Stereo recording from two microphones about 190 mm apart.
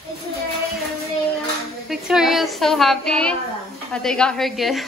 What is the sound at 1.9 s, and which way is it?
A woman's voice, centre (ahead or behind).